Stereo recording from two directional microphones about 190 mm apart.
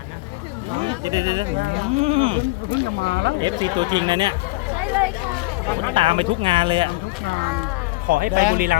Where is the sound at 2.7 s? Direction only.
70° right (ahead or behind).